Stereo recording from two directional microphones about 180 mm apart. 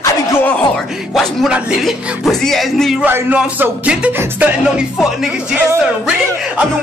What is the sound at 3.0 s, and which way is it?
Music, 10° right (ahead or behind).